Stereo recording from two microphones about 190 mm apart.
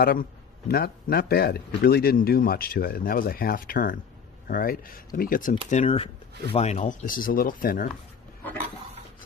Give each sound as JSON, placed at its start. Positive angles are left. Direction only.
{"t": 0.0, "sound": "a man's voice", "side_deg": 50}
{"t": 5.7, "sound": "a man's voice", "side_deg": 35}